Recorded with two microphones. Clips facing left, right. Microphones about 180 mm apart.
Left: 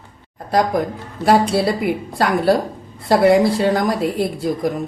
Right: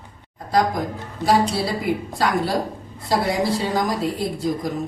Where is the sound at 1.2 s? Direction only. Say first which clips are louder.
Left 4 dB; 60° left (ahead or behind).